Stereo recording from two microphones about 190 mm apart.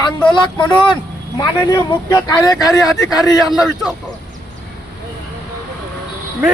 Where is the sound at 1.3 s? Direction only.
20° left (ahead or behind).